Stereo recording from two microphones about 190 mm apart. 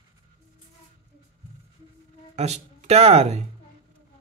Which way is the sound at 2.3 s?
35° right (ahead or behind).